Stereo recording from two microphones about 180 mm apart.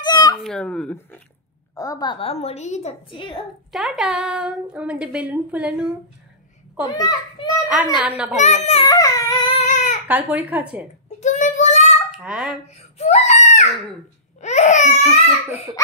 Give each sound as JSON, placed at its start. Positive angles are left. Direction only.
{"t": 0.0, "sound": "a sound", "side_deg": 20}
{"t": 0.4, "sound": "a woman's voice", "side_deg": 5}
{"t": 1.8, "sound": "a woman's voice", "side_deg": 20}
{"t": 3.7, "sound": "a woman's voice", "side_deg": 0}
{"t": 6.8, "sound": "a child's voice", "side_deg": 25}
{"t": 7.7, "sound": "a woman's voice", "side_deg": -5}
{"t": 8.4, "sound": "a woman's voice", "side_deg": 40}
{"t": 8.8, "sound": "baby cry", "side_deg": 20}
{"t": 9.7, "sound": "baby cry", "side_deg": 40}
{"t": 10.0, "sound": "speech", "side_deg": -10}
{"t": 11.1, "sound": "child singing", "side_deg": 40}
{"t": 12.2, "sound": "speech", "side_deg": 0}
{"t": 12.9, "sound": "a sound", "side_deg": 40}